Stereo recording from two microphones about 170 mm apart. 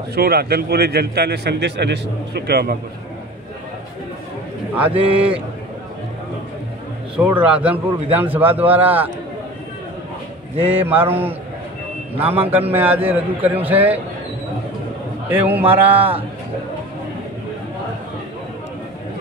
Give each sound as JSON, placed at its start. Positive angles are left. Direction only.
{"t": 0.1, "sound": "a man's voice", "side_deg": -65}
{"t": 4.7, "sound": "a man's voice", "side_deg": -10}
{"t": 7.2, "sound": "a man's voice", "side_deg": -10}
{"t": 10.6, "sound": "a man's voice", "side_deg": -10}
{"t": 15.2, "sound": "a man's voice", "side_deg": -10}